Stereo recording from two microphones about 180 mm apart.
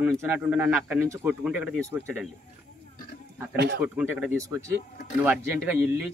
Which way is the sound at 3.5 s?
70° right (ahead or behind).